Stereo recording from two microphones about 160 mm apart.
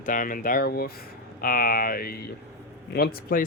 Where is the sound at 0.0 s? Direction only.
55° left (ahead or behind).